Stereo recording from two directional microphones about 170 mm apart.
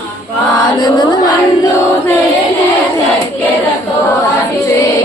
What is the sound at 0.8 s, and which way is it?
Music, 25° left (ahead or behind).